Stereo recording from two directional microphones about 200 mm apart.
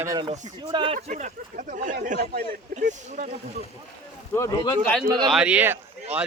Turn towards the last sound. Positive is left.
turn(degrees=-10)  # may be behind; listen again after turning